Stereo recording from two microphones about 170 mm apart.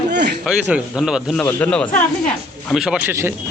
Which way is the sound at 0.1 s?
80° right.